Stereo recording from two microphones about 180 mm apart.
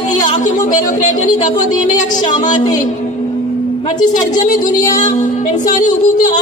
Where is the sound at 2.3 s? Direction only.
25° left (ahead or behind).